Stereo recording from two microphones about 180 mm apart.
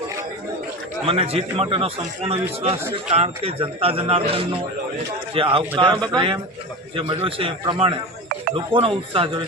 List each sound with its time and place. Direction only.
1.0 s a man's voice: 35° right (ahead or behind)